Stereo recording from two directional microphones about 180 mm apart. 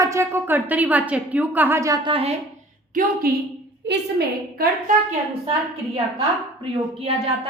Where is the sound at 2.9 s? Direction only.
50° right (ahead or behind).